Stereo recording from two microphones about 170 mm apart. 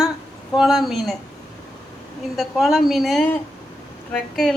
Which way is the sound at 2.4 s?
Centre (ahead or behind).